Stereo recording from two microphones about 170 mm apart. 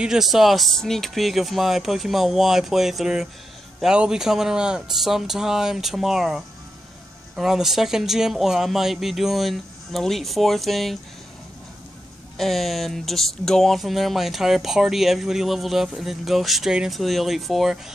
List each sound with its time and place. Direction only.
0.0 s speech: 5° right (ahead or behind)
12.4 s speech: centre (ahead or behind)